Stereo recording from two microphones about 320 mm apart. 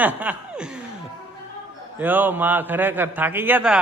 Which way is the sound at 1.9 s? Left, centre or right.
Centre.